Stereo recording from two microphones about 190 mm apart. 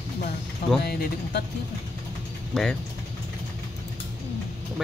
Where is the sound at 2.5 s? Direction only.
Centre (ahead or behind).